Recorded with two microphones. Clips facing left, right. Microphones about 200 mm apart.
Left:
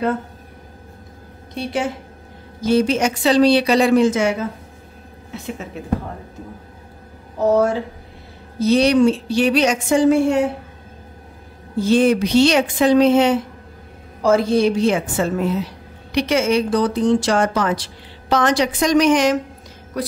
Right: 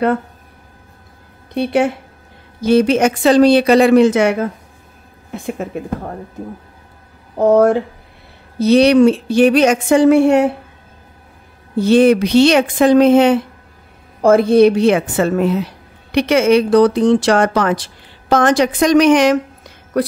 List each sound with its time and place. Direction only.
1.5 s a woman's voice: 60° right (ahead or behind)
5.3 s a woman's voice: 55° right (ahead or behind)
7.3 s a woman's voice: 55° right (ahead or behind)
8.5 s a woman's voice: 65° right (ahead or behind)
11.7 s a woman's voice: 65° right (ahead or behind)